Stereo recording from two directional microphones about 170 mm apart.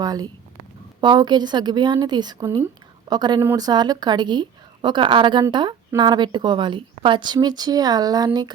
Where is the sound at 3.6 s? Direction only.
25° right (ahead or behind).